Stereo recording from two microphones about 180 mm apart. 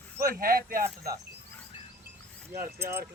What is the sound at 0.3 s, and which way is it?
Speech, 55° right (ahead or behind).